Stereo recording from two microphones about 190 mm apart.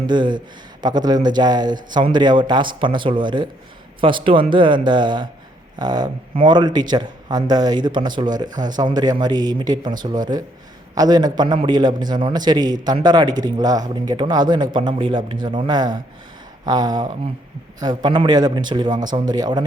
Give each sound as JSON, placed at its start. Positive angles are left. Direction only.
{"t": 0.1, "sound": "a man's voice", "side_deg": -25}